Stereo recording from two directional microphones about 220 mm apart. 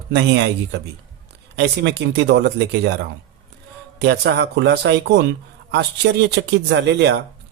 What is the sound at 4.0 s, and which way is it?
Speech, 50° right (ahead or behind).